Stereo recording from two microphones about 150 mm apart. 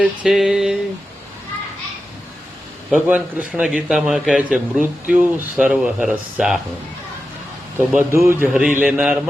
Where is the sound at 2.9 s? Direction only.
10° right (ahead or behind).